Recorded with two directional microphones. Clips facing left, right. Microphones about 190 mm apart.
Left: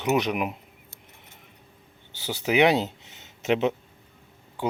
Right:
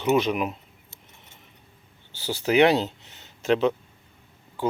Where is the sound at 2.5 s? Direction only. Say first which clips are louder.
Right 2 dB; 15° left (ahead or behind).